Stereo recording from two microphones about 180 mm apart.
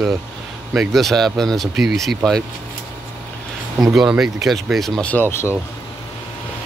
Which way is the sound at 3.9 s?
5° right (ahead or behind).